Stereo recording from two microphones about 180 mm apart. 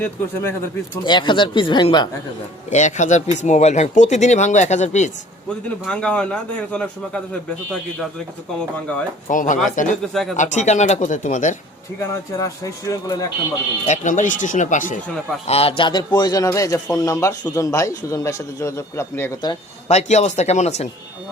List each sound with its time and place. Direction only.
0.0 s a man's voice: 15° left (ahead or behind)
1.0 s speech: 25° left (ahead or behind)
2.6 s speech: 40° left (ahead or behind)
5.8 s a man's voice: 5° left (ahead or behind)
9.2 s speech: 45° left (ahead or behind)
10.0 s a man's voice: centre (ahead or behind)
10.3 s speech: 40° left (ahead or behind)
11.9 s a man's voice: 15° left (ahead or behind)
13.8 s speech: 40° left (ahead or behind)
15.4 s a man's voice: 35° left (ahead or behind); by 19.5 s 15° left (ahead or behind)
19.9 s speech: 40° left (ahead or behind)